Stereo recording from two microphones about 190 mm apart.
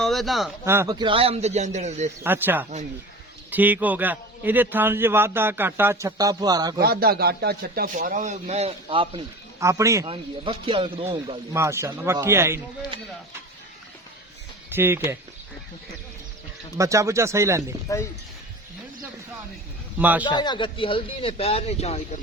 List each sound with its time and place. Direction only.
0.0 s speech: centre (ahead or behind)
0.6 s speech: 15° right (ahead or behind); by 2.0 s 35° right (ahead or behind)
2.2 s a man's voice: 10° right (ahead or behind)
6.7 s a man's voice: 55° right (ahead or behind); by 9.2 s 30° right (ahead or behind)
9.6 s a man's voice: 15° right (ahead or behind)
10.1 s speech: 25° right (ahead or behind)
11.5 s a man's voice: 15° right (ahead or behind)
14.7 s a man's voice: 10° right (ahead or behind)
16.7 s a man's voice: 15° right (ahead or behind)
20.0 s a man's voice: 10° right (ahead or behind)
20.2 s speech: 25° left (ahead or behind)